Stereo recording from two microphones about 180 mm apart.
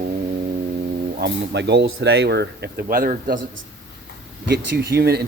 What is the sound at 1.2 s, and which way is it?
Speech, 70° right (ahead or behind).